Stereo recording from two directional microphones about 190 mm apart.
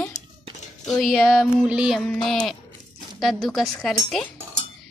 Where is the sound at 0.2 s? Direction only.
40° left (ahead or behind).